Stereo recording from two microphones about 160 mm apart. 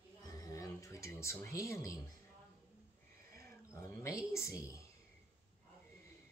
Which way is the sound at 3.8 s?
20° left (ahead or behind).